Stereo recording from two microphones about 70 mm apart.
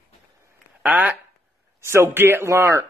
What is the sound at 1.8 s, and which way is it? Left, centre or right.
Speech, right.